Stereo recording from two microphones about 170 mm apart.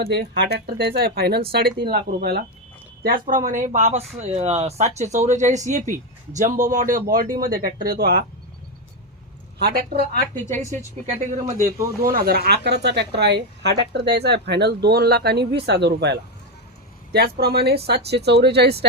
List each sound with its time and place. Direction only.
0.1 s a woman's voice: 80° right; by 2.4 s 65° right (ahead or behind)
3.2 s speech: 50° right (ahead or behind)
9.6 s speech: 60° right (ahead or behind)
10.5 s speech: 45° right (ahead or behind)
12.0 s a woman's voice: 60° right (ahead or behind); by 18.9 s 75° right (ahead or behind)